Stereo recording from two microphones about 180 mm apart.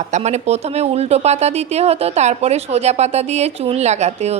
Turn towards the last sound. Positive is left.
turn(degrees=-35)  # may be behind; listen again after turning